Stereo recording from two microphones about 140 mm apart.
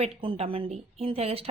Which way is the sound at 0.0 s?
45° right (ahead or behind).